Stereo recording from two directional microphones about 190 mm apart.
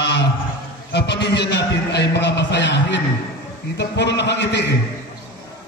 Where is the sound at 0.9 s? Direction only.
65° left (ahead or behind).